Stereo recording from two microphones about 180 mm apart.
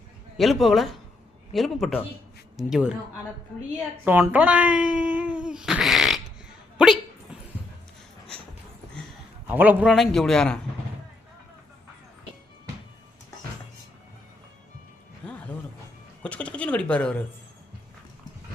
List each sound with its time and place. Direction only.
0.3 s a man's voice: centre (ahead or behind)
4.0 s speech: 10° right (ahead or behind)
9.5 s a man's voice: 10° right (ahead or behind)
16.2 s speech: 5° left (ahead or behind)